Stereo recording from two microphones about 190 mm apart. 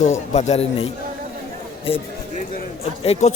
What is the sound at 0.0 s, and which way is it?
Speech, 35° left (ahead or behind).